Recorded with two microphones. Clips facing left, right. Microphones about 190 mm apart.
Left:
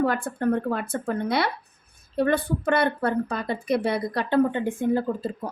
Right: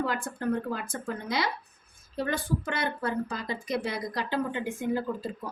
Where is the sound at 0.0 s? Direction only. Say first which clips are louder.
Left 7 dB; 60° left (ahead or behind).